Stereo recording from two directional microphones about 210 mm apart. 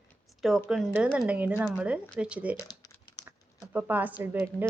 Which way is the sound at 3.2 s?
10° right (ahead or behind).